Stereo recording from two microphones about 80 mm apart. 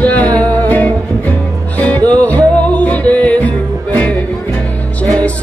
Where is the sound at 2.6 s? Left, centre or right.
Centre.